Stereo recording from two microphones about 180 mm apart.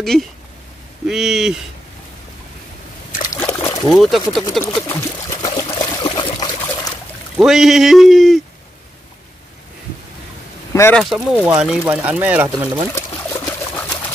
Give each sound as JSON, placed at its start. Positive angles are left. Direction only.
{"t": 0.0, "sound": "speech", "side_deg": 0}
{"t": 3.3, "sound": "a sound", "side_deg": 15}
{"t": 3.8, "sound": "speech", "side_deg": 0}
{"t": 4.8, "sound": "trickle", "side_deg": 15}
{"t": 7.3, "sound": "speech", "side_deg": 0}
{"t": 10.7, "sound": "a sound", "side_deg": 15}
{"t": 11.0, "sound": "speech", "side_deg": 0}
{"t": 12.9, "sound": "trickle", "side_deg": 15}